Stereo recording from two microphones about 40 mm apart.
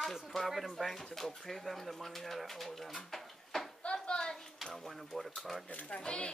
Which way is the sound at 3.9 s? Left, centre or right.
Centre.